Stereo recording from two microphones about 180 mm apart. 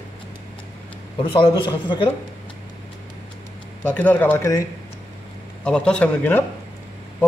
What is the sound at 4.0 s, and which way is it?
Speech, 10° left (ahead or behind).